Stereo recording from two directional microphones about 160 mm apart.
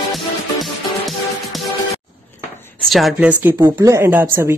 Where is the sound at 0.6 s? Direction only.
Centre (ahead or behind).